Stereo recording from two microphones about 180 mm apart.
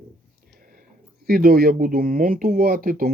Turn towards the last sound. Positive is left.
turn(degrees=-55)  # may be behind; listen again after turning